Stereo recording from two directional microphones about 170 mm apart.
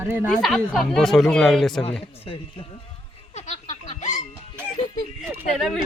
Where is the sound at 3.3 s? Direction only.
45° left (ahead or behind).